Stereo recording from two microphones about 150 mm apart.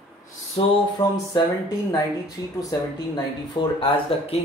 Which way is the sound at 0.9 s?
25° left (ahead or behind).